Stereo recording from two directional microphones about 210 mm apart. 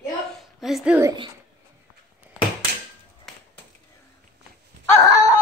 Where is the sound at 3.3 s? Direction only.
5° left (ahead or behind).